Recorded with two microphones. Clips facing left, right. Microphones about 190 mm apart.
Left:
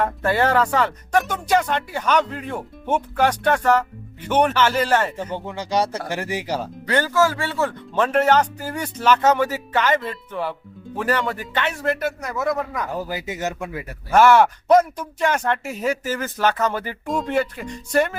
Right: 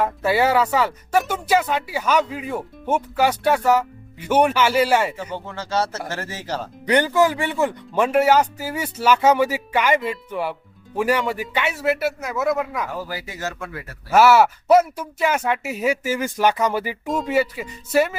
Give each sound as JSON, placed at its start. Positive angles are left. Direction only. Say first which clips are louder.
{"t": 0.0, "sound": "speech", "louder": "right 1 dB", "side_deg": -5}
{"t": 5.3, "sound": "speech", "louder": "left 2 dB", "side_deg": 15}
{"t": 6.8, "sound": "speech", "louder": "right 2 dB", "side_deg": -15}
{"t": 12.9, "sound": "speech", "louder": "left 3 dB", "side_deg": 20}
{"t": 14.1, "sound": "speech", "louder": "even", "side_deg": -5}